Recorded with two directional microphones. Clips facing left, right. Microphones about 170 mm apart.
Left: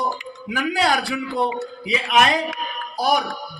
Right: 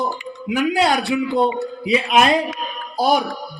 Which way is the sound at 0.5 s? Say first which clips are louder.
Right 3 dB; 25° right (ahead or behind).